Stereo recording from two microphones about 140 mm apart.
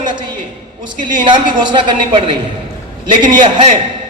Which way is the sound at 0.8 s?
35° right (ahead or behind).